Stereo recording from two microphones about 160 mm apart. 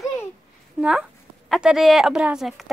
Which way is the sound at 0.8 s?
5° right (ahead or behind).